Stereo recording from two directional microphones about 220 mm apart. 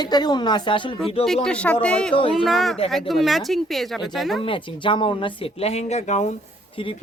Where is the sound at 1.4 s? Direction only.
5° left (ahead or behind).